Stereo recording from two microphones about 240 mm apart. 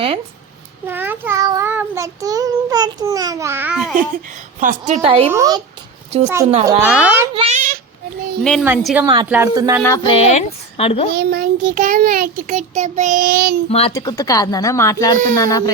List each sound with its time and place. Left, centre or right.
0.9 s child singing: centre
4.6 s a woman's voice: right; by 7.3 s centre
7.3 s a sound: right
8.6 s a child's voice: centre
9.8 s speech: centre
11.1 s a child's voice: right
13.7 s speech: left